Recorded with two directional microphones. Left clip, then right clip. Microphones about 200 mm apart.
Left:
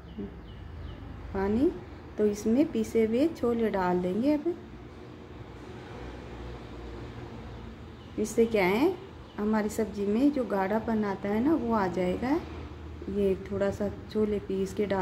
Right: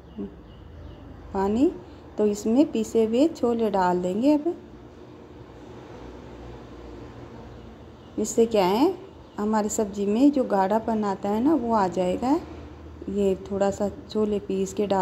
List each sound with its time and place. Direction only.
1.3 s a woman's voice: 20° right (ahead or behind)
8.2 s a woman's voice: 20° right (ahead or behind)